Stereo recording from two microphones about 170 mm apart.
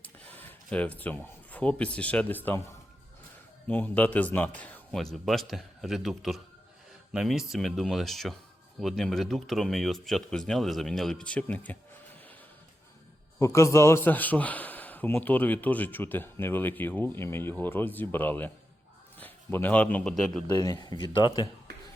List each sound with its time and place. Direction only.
0.3 s speech: 10° left (ahead or behind)
3.7 s a man's voice: 10° left (ahead or behind)
13.4 s a man's voice: 15° left (ahead or behind)
20.5 s speech: 20° left (ahead or behind)